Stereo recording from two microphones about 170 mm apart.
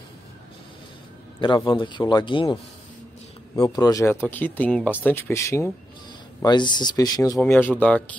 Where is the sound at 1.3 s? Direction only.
25° left (ahead or behind).